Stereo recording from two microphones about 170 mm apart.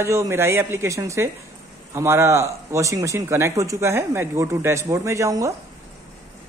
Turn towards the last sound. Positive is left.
turn(degrees=-20)  # may be behind; listen again after turning